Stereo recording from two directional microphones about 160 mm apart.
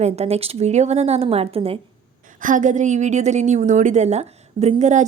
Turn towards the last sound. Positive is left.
turn(degrees=-45)  # may be behind; listen again after turning